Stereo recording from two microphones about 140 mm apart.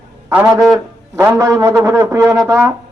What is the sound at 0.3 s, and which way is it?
Speech, 15° right (ahead or behind).